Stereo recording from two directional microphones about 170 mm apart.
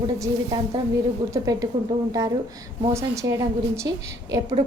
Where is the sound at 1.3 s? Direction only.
20° right (ahead or behind).